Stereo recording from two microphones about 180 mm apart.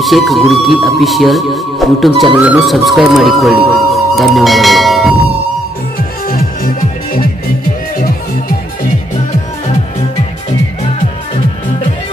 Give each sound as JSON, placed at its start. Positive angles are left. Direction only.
{"t": 0.0, "sound": "speech", "side_deg": 0}
{"t": 6.2, "sound": "music", "side_deg": 55}